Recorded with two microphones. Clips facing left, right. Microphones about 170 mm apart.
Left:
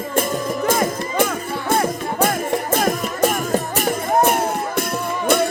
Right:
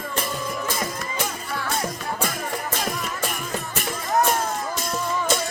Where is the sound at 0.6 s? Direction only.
50° left (ahead or behind).